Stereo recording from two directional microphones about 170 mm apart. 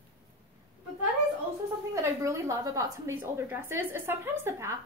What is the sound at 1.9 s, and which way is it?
A woman's voice, 15° right (ahead or behind).